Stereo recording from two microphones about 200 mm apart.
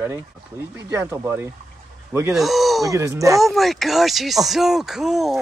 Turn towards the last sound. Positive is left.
turn(degrees=0)  # may be behind; listen again after turning